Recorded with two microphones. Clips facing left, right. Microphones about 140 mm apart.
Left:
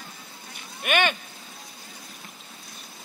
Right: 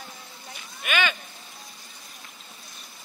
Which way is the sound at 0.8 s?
55° left (ahead or behind).